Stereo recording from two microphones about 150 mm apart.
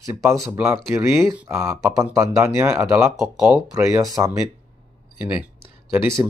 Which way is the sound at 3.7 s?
20° right (ahead or behind).